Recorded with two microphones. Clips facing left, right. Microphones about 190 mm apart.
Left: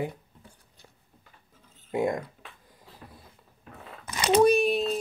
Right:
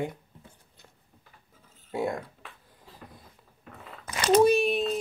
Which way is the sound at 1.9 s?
15° left (ahead or behind).